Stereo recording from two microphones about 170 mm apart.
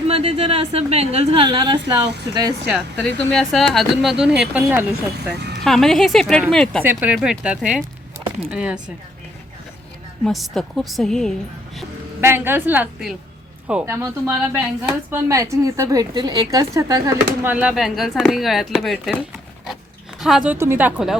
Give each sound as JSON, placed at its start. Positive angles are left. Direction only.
{"t": 0.1, "sound": "speech", "side_deg": -35}
{"t": 2.6, "sound": "speech", "side_deg": 5}
{"t": 6.8, "sound": "speech", "side_deg": -10}
{"t": 10.2, "sound": "speech", "side_deg": 0}
{"t": 12.2, "sound": "a woman's voice", "side_deg": -15}